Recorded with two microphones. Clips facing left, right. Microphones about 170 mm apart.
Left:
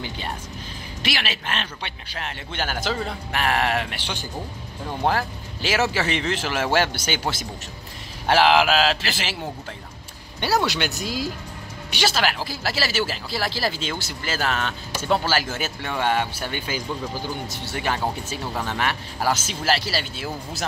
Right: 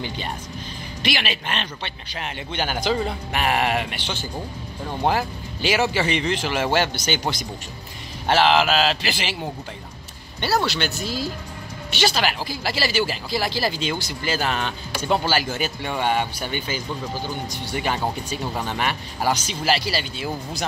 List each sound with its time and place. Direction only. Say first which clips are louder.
1.0 s speech: right 2 dB; 5° left (ahead or behind)
5.0 s speech: right 1 dB; centre (ahead or behind)
10.8 s speech: even; 15° left (ahead or behind)
12.0 s speech: right 1 dB; 5° left (ahead or behind)